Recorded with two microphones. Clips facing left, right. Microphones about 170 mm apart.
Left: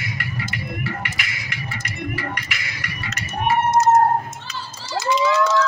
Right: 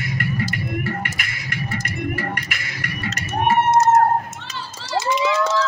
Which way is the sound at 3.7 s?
80° right.